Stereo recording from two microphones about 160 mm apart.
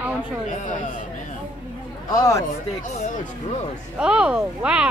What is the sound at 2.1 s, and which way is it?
Speech, 20° left (ahead or behind).